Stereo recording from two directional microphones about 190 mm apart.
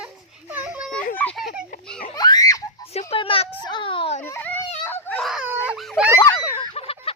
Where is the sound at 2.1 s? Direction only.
20° left (ahead or behind).